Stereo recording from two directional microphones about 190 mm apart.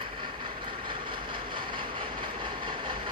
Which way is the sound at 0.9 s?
25° right (ahead or behind).